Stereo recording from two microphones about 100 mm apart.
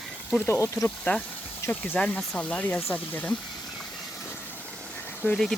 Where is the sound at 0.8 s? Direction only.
15° left (ahead or behind).